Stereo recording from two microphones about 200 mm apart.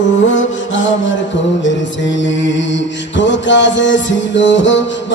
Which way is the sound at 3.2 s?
65° left (ahead or behind).